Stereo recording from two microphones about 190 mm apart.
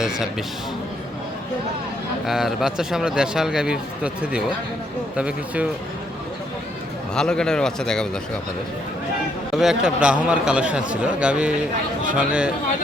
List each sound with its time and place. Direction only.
2.2 s a man's voice: centre (ahead or behind)
7.1 s a man's voice: 5° left (ahead or behind)
9.6 s a man's voice: 5° right (ahead or behind)